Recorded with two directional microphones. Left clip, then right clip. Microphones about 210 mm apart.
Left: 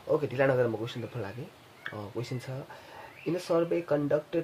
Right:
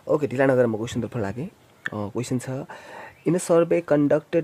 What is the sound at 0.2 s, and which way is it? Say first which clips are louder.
Speech: right 6 dB; 55° right (ahead or behind).